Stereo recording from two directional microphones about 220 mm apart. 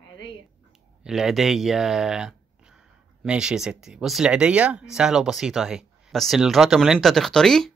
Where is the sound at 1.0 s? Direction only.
Centre (ahead or behind).